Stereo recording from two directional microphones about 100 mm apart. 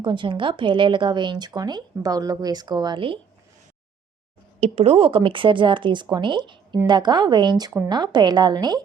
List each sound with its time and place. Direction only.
0.0 s speech: 55° right (ahead or behind)
4.6 s a woman's voice: 85° right; by 8.8 s 45° right (ahead or behind)